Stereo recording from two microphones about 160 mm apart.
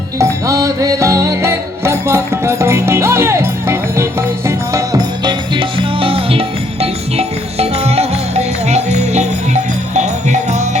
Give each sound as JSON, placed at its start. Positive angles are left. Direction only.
{"t": 0.2, "sound": "music", "side_deg": -20}